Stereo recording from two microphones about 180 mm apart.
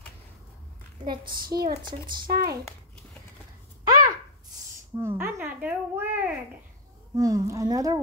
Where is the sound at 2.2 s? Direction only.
60° right (ahead or behind).